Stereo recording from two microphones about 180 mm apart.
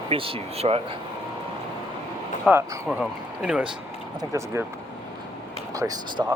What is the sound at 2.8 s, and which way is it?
Speech, 5° right (ahead or behind).